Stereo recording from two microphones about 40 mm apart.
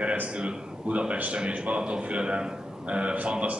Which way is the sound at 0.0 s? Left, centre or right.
Right.